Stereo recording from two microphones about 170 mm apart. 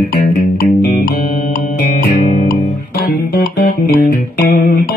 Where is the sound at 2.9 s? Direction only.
65° left (ahead or behind).